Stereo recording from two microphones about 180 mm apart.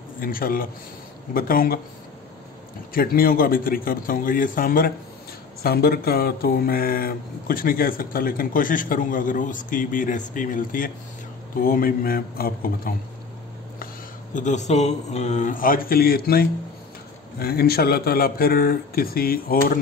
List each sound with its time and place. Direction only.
0.2 s speech: 55° left (ahead or behind)
2.9 s speech: 55° left (ahead or behind)
14.3 s speech: 40° left (ahead or behind)